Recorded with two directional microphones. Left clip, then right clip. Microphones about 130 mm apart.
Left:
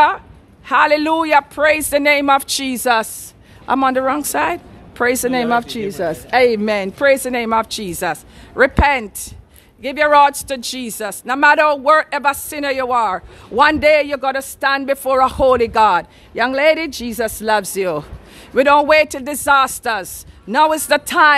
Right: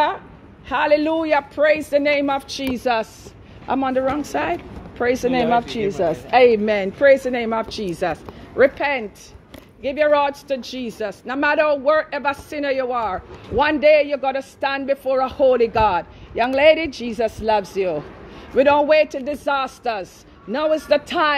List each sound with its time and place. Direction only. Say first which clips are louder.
0.7 s a woman's voice: left 4 dB; 40° left (ahead or behind)